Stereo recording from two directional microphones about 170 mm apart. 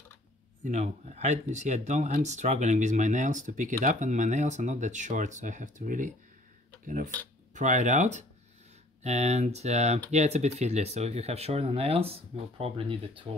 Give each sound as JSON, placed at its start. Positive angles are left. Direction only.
{"t": 0.7, "sound": "speech", "side_deg": -40}
{"t": 7.5, "sound": "speech", "side_deg": -45}